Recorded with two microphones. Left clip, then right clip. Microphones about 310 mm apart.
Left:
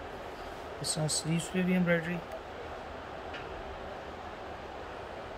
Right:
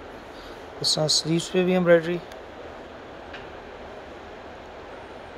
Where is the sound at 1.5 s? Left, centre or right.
Right.